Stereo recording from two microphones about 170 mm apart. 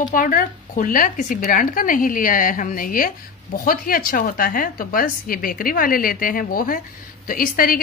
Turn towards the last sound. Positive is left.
turn(degrees=55)  # may be behind; listen again after turning